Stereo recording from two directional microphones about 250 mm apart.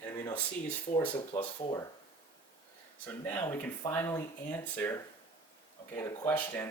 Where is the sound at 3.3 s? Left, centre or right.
Centre.